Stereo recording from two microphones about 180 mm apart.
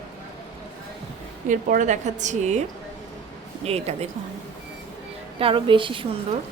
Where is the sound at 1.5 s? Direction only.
45° right (ahead or behind).